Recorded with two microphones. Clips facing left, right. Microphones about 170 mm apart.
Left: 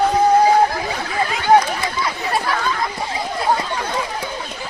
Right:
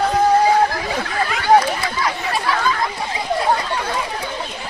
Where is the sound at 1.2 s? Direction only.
20° left (ahead or behind).